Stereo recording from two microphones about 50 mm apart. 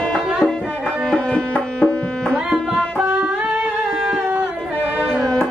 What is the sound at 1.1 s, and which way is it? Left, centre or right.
Tabla, left.